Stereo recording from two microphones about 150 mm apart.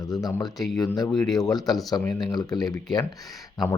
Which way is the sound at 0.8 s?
25° left (ahead or behind).